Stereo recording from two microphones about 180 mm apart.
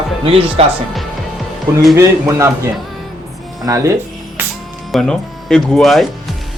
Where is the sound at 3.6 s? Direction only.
15° right (ahead or behind).